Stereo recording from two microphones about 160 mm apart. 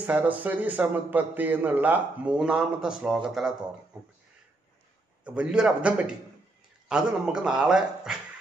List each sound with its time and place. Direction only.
0.0 s a man's voice: 10° right (ahead or behind)
5.2 s a man's voice: 5° right (ahead or behind)